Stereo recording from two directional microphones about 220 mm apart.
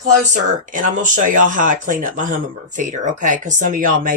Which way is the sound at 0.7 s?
35° right (ahead or behind).